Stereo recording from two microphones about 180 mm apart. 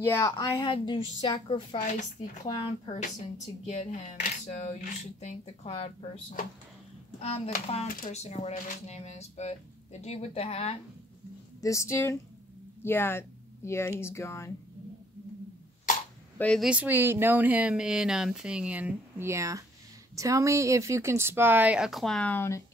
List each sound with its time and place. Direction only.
0.0 s speech: 10° left (ahead or behind)
0.4 s a woman's voice: 25° left (ahead or behind)
1.9 s speech: 40° left (ahead or behind)
3.6 s speech: 40° left (ahead or behind)
7.2 s speech: 35° left (ahead or behind)
11.6 s speech: 15° left (ahead or behind)
16.3 s speech: 5° left (ahead or behind)
16.6 s speech: 10° right (ahead or behind); by 22.6 s 10° left (ahead or behind)